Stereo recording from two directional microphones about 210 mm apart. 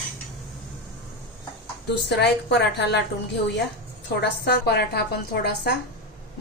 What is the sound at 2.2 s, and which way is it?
Speech, 55° left (ahead or behind).